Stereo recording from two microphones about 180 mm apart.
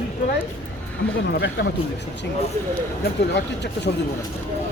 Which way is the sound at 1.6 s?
70° left (ahead or behind).